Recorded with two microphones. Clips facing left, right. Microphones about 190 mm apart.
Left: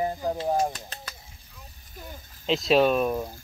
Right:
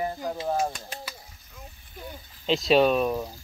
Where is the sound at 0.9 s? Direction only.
10° right (ahead or behind).